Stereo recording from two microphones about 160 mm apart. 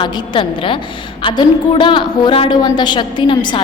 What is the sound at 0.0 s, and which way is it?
A woman's voice, 30° left (ahead or behind).